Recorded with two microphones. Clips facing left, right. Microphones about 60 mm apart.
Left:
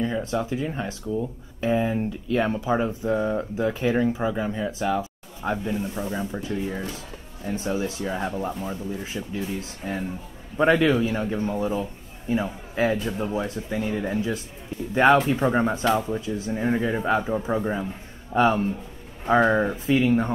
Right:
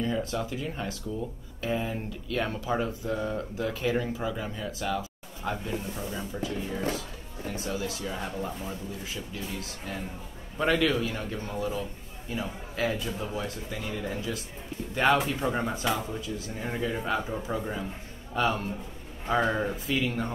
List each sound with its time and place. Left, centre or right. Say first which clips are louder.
0.0 s speech: left 4 dB; left
15.4 s speech: left 7 dB; left